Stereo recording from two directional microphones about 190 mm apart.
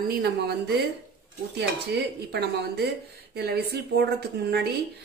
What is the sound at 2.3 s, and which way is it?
A woman's voice, 60° right (ahead or behind).